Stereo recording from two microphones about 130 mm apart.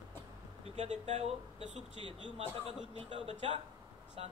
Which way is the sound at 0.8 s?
55° right (ahead or behind).